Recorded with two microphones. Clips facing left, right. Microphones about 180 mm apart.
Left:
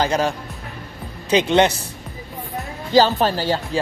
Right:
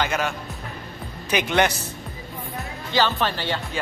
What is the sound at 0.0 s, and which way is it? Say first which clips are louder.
Speech: left 5 dB; 35° left (ahead or behind).